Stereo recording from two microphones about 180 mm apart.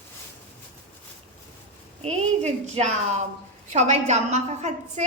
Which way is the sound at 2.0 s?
35° right (ahead or behind).